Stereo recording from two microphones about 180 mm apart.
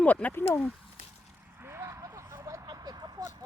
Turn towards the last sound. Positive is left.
turn(degrees=-20)  # may be behind; listen again after turning